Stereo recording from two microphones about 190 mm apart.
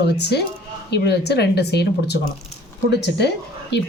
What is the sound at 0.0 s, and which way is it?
A woman's voice, 60° left (ahead or behind).